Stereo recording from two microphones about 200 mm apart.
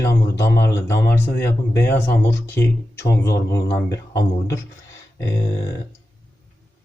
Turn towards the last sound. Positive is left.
turn(degrees=15)  # may be behind; listen again after turning